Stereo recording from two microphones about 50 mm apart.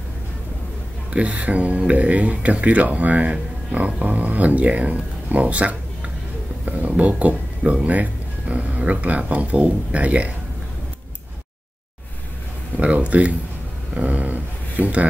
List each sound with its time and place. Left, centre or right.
1.1 s speech: right
12.7 s speech: right